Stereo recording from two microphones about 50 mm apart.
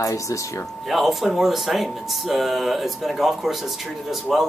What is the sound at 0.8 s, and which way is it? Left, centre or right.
Speech, centre.